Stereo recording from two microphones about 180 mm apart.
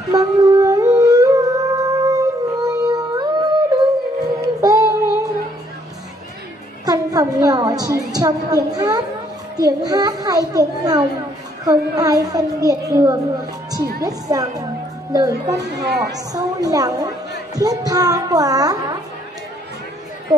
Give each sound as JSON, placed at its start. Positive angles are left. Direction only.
{"t": 0.1, "sound": "a sound", "side_deg": -20}
{"t": 4.4, "sound": "child singing", "side_deg": -20}
{"t": 6.9, "sound": "a woman's voice", "side_deg": -20}